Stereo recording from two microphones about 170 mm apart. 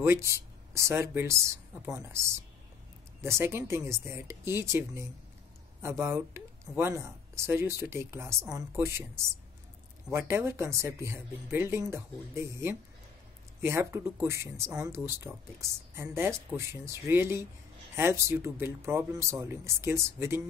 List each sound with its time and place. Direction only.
0.0 s speech: 15° right (ahead or behind)